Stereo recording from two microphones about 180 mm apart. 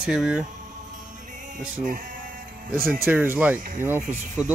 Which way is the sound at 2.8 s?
10° right (ahead or behind).